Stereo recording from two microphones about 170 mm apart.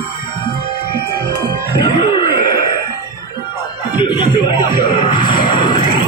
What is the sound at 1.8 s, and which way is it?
Music, 25° left (ahead or behind).